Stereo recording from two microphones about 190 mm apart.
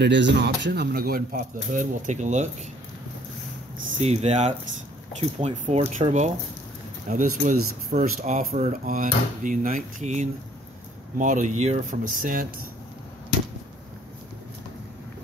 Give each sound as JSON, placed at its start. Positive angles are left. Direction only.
{"t": 0.0, "sound": "speech", "side_deg": -65}
{"t": 4.0, "sound": "speech", "side_deg": -35}